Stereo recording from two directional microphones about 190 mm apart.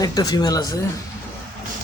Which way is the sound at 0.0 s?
20° left (ahead or behind).